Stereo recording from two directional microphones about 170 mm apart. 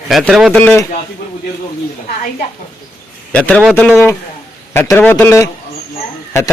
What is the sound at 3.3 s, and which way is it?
Speech, 5° left (ahead or behind).